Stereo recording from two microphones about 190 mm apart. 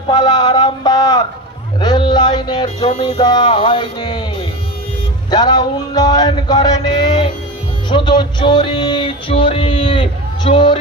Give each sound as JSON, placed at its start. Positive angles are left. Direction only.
{"t": 0.1, "sound": "a sound", "side_deg": 25}
{"t": 1.8, "sound": "music", "side_deg": 25}
{"t": 5.3, "sound": "music", "side_deg": 20}